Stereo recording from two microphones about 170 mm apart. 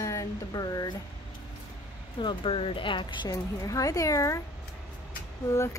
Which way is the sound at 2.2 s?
30° left (ahead or behind).